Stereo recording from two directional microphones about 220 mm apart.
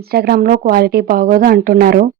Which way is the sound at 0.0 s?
45° right (ahead or behind).